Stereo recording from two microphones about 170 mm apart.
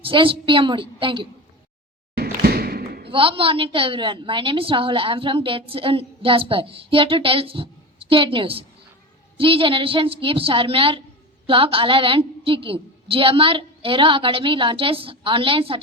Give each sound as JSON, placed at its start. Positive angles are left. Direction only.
{"t": 0.0, "sound": "a woman's voice", "side_deg": -30}
{"t": 2.1, "sound": "basketball bounce", "side_deg": -65}
{"t": 3.1, "sound": "a woman's voice", "side_deg": -30}